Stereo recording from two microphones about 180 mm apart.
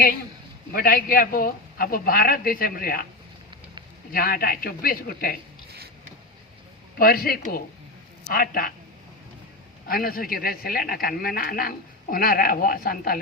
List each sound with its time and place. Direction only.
0.7 s a man's voice: 55° left (ahead or behind)
4.1 s speech: 55° left (ahead or behind)
7.0 s a man's voice: 55° left (ahead or behind)
9.8 s speech: 55° left (ahead or behind)